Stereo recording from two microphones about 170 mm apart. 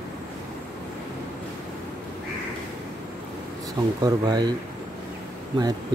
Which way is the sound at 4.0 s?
25° right (ahead or behind).